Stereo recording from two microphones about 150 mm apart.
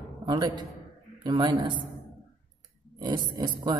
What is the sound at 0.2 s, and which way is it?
A man's voice, 30° right (ahead or behind).